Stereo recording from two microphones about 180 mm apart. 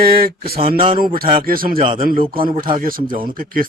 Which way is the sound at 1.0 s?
55° right (ahead or behind).